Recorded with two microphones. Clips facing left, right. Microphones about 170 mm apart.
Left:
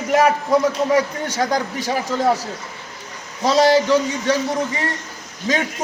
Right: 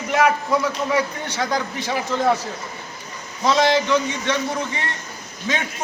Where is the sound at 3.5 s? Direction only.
40° left (ahead or behind).